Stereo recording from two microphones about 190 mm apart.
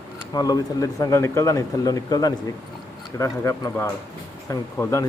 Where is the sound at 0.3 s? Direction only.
20° left (ahead or behind).